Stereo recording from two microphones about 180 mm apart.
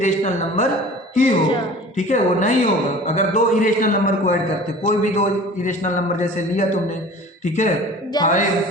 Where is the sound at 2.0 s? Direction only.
45° left (ahead or behind).